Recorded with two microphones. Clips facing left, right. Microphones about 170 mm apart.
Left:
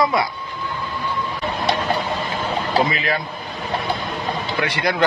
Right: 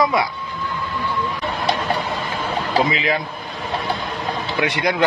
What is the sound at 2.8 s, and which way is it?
Speech, 15° right (ahead or behind).